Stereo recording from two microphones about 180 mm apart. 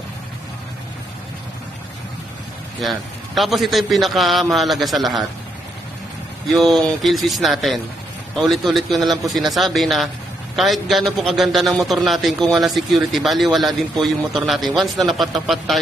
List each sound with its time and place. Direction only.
2.8 s a man's voice: centre (ahead or behind)
6.6 s a man's voice: centre (ahead or behind)